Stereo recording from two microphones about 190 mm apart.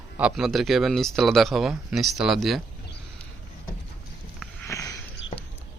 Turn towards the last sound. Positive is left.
turn(degrees=15)  # may be behind; listen again after turning